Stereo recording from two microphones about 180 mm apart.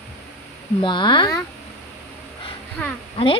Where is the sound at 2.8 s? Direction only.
10° left (ahead or behind).